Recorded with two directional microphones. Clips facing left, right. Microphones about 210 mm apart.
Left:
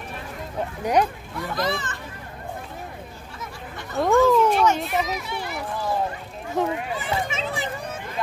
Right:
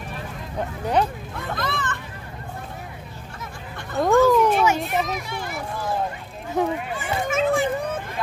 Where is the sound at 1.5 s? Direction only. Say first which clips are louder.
Left 2 dB; 55° right (ahead or behind).